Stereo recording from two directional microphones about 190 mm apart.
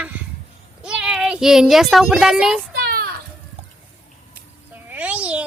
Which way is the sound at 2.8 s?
55° right (ahead or behind).